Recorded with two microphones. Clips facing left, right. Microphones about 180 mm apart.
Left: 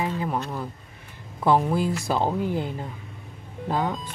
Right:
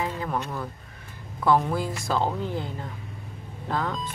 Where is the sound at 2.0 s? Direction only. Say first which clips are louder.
Left 2 dB; 15° left (ahead or behind).